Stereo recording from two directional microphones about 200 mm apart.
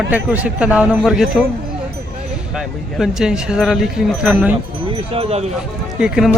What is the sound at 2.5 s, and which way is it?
Speech, 5° right (ahead or behind).